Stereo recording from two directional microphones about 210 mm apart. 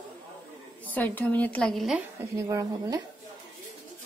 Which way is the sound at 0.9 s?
10° left (ahead or behind).